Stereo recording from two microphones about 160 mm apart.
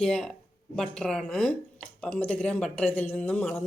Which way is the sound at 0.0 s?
5° left (ahead or behind).